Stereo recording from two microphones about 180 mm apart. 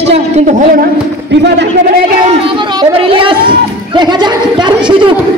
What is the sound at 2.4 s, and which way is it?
Speech, 30° right (ahead or behind).